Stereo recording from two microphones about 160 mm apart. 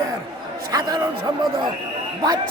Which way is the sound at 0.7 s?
25° right (ahead or behind).